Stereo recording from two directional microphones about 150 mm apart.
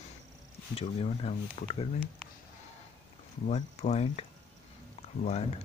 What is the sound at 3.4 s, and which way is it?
Speech, 50° left (ahead or behind).